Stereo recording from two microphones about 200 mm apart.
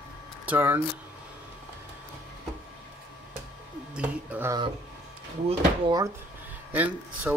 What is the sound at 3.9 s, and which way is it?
Speech, 10° right (ahead or behind).